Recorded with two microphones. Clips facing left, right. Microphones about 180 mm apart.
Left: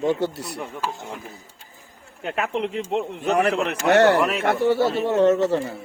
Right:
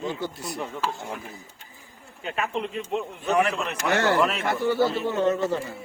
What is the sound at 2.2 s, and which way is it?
A man's voice, 60° left (ahead or behind).